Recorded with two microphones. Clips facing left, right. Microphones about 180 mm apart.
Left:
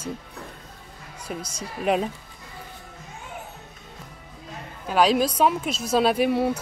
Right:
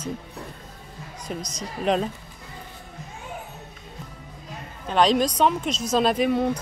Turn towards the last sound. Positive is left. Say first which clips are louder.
# even
turn(degrees=5)  # may be behind; listen again after turning